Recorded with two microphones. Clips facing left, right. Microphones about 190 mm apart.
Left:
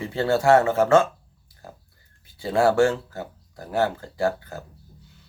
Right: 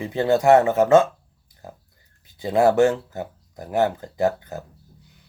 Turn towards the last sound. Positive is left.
turn(degrees=-20)  # may be behind; listen again after turning